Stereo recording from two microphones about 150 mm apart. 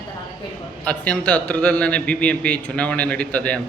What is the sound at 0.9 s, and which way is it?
A man's voice, 10° left (ahead or behind).